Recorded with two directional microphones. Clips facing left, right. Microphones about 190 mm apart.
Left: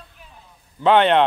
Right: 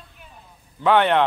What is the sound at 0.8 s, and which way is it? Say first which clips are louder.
Speech: left 2 dB; 20° left (ahead or behind).